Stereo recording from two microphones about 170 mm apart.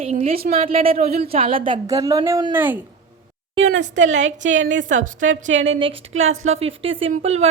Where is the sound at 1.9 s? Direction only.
20° right (ahead or behind).